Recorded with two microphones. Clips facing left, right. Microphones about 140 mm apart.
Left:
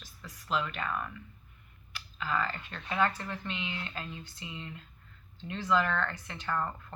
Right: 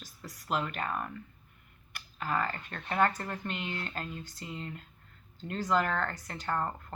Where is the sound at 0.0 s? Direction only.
45° right (ahead or behind).